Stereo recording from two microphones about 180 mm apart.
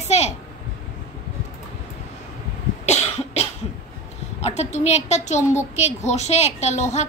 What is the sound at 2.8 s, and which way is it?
Cough, 35° left (ahead or behind).